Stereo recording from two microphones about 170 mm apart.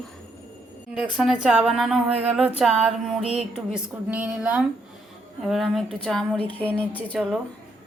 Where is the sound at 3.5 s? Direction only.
5° right (ahead or behind); by 7.0 s 10° left (ahead or behind).